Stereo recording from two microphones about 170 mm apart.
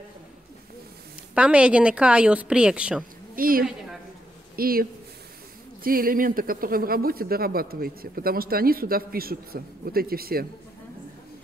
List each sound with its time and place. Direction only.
1.3 s a woman's voice: 5° right (ahead or behind)
3.3 s a woman's voice: 55° right (ahead or behind)
5.9 s speech: 55° right (ahead or behind)